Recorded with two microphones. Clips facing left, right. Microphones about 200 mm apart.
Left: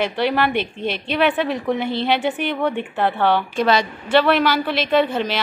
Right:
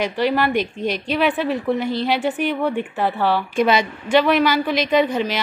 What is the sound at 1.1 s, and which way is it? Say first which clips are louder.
A woman's voice: left 1 dB; 5° right (ahead or behind).